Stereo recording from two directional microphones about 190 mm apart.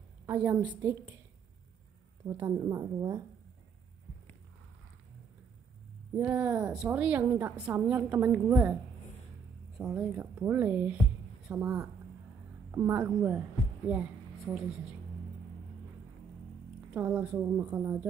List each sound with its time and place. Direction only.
0.3 s a woman's voice: 10° right (ahead or behind)
2.2 s a woman's voice: 15° right (ahead or behind)
6.1 s a woman's voice: 10° right (ahead or behind)
9.8 s a woman's voice: 5° right (ahead or behind)
14.5 s a woman's voice: 5° right (ahead or behind)
16.9 s a woman's voice: 10° right (ahead or behind)